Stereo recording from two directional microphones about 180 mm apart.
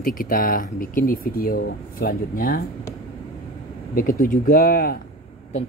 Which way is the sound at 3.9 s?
50° left (ahead or behind).